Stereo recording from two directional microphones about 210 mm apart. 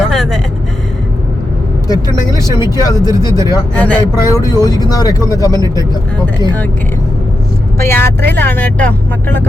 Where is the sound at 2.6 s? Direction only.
20° left (ahead or behind).